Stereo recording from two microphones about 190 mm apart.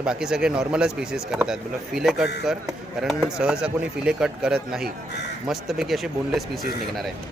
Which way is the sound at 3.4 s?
5° right (ahead or behind).